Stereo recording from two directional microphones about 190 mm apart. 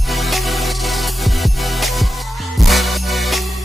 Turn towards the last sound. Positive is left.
turn(degrees=0)  # may be behind; listen again after turning